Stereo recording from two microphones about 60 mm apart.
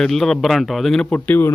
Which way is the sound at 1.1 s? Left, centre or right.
Left.